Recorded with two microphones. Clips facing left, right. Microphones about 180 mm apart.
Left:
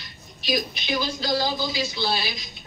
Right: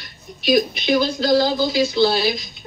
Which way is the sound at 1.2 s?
50° right (ahead or behind).